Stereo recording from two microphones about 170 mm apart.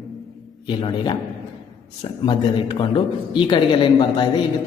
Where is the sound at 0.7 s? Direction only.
30° left (ahead or behind).